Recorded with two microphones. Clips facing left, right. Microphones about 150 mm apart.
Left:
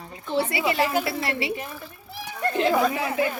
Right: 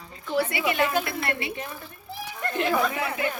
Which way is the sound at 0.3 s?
30° left (ahead or behind).